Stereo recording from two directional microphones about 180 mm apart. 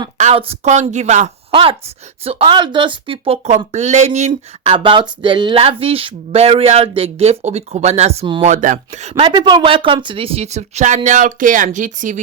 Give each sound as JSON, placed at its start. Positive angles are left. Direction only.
{"t": 0.2, "sound": "speech", "side_deg": -35}
{"t": 1.5, "sound": "speech", "side_deg": -30}